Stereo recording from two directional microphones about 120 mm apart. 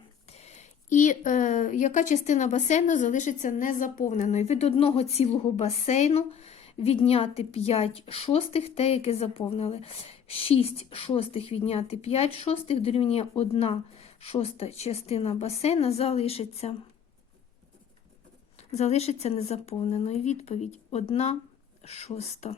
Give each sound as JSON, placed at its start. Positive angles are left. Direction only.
{"t": 0.3, "sound": "a woman's voice", "side_deg": 65}
{"t": 18.7, "sound": "a woman's voice", "side_deg": 65}